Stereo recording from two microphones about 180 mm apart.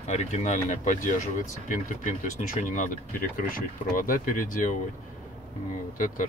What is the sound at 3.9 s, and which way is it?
Speech, 50° left (ahead or behind).